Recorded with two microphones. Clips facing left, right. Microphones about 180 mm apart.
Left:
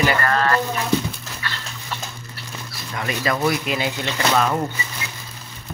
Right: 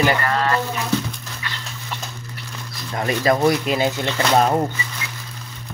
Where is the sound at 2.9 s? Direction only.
40° right (ahead or behind).